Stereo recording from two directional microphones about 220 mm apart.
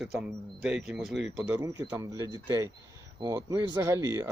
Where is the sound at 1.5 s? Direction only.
15° right (ahead or behind).